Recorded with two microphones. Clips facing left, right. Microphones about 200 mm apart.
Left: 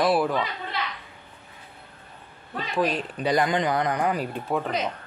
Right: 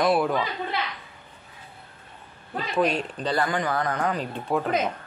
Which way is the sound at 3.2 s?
20° left (ahead or behind).